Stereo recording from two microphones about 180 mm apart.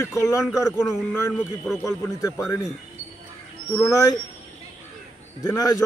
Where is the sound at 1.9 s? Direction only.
15° left (ahead or behind).